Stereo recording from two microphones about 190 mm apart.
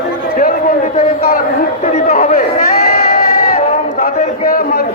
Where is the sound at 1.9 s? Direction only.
35° left (ahead or behind).